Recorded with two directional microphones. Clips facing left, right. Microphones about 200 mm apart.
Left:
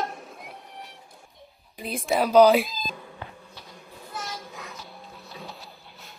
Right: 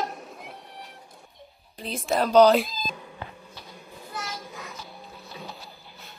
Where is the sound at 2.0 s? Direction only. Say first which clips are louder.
Left 1 dB; centre (ahead or behind).